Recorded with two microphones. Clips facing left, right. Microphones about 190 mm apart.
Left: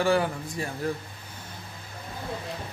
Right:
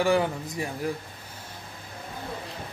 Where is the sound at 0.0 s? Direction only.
20° right (ahead or behind).